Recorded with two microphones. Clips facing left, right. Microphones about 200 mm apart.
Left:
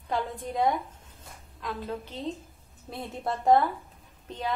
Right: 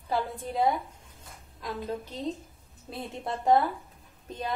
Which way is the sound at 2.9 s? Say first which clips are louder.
Left 2 dB; centre (ahead or behind).